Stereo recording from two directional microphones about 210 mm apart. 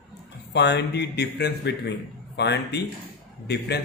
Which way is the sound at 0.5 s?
55° left (ahead or behind).